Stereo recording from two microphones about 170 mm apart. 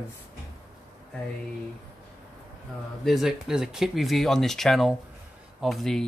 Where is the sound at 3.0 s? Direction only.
Centre (ahead or behind).